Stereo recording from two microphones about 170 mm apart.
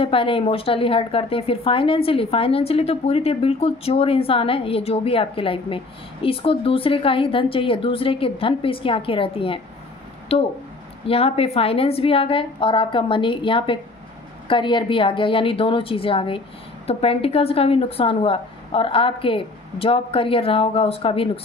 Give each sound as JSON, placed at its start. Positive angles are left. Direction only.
{"t": 0.0, "sound": "a woman's voice", "side_deg": 30}